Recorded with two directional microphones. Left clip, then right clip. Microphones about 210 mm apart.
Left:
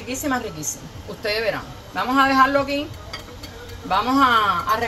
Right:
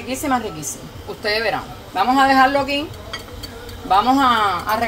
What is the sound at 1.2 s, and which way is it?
A man's voice, 35° right (ahead or behind).